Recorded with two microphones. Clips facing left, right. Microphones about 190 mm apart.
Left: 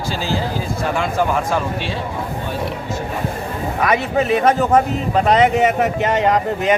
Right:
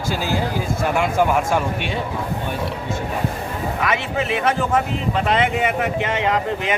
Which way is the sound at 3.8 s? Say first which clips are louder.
Left 6 dB; 40° left (ahead or behind).